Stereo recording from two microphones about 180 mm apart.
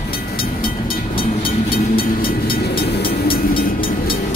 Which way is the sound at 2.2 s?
55° left (ahead or behind).